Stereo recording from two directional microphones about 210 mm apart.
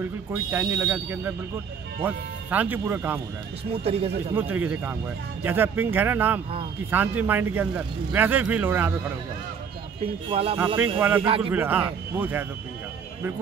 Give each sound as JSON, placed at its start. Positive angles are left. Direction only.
{"t": 0.0, "sound": "speech", "side_deg": -10}
{"t": 3.8, "sound": "speech", "side_deg": -30}
{"t": 4.6, "sound": "speech", "side_deg": -10}
{"t": 10.3, "sound": "speech", "side_deg": -25}
{"t": 11.0, "sound": "speech", "side_deg": -10}
{"t": 11.2, "sound": "speech", "side_deg": -25}
{"t": 11.5, "sound": "speech", "side_deg": -10}